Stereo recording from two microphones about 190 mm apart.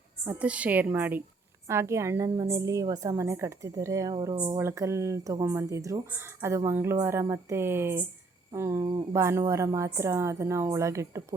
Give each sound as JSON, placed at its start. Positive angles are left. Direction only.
{"t": 0.3, "sound": "a woman's voice", "side_deg": -5}